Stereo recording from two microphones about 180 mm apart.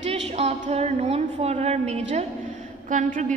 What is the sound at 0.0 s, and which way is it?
A woman's voice, 35° right (ahead or behind).